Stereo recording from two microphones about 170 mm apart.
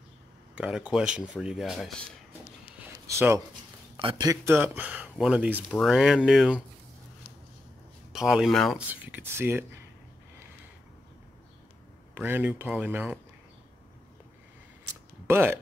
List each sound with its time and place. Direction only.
0.6 s speech: 5° right (ahead or behind)
3.1 s speech: 15° right (ahead or behind)
3.9 s speech: 25° right (ahead or behind); by 6.6 s 5° right (ahead or behind)
8.1 s speech: 5° right (ahead or behind)
9.0 s speech: 10° right (ahead or behind)
12.1 s speech: 10° right (ahead or behind)
15.2 s speech: 15° right (ahead or behind)